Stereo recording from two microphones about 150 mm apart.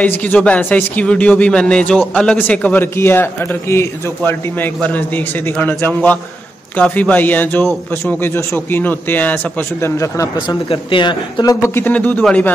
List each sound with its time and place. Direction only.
0.0 s a man's voice: 10° left (ahead or behind)
10.7 s a man's voice: 35° left (ahead or behind)
11.6 s a man's voice: 15° left (ahead or behind)